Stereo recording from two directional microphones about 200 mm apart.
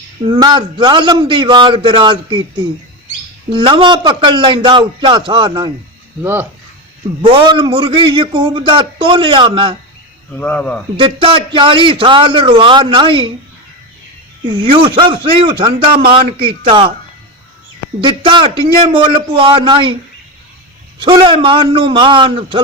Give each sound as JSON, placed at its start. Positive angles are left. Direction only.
{"t": 0.3, "sound": "a man's voice", "side_deg": -20}
{"t": 3.5, "sound": "a man's voice", "side_deg": -25}
{"t": 7.2, "sound": "a man's voice", "side_deg": -25}
{"t": 10.3, "sound": "speech", "side_deg": 5}
{"t": 10.9, "sound": "a man's voice", "side_deg": -25}
{"t": 14.4, "sound": "a man's voice", "side_deg": -25}
{"t": 18.0, "sound": "a man's voice", "side_deg": -25}
{"t": 21.0, "sound": "a man's voice", "side_deg": -25}